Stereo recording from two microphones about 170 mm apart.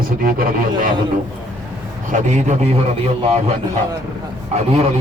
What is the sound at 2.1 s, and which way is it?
Speech, 40° right (ahead or behind).